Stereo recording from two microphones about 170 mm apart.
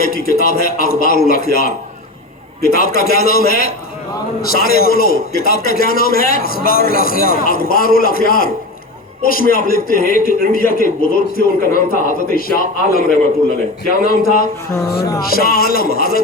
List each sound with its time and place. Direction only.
0.0 s a man's voice: 60° left (ahead or behind)